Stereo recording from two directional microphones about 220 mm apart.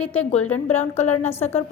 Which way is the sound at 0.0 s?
5° left (ahead or behind).